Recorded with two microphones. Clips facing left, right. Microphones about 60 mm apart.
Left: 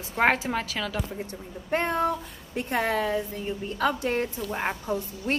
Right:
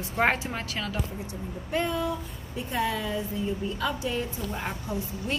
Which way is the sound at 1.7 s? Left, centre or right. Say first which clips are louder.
Left 3 dB; left.